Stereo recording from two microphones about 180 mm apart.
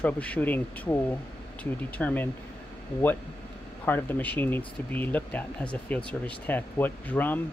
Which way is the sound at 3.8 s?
10° left (ahead or behind).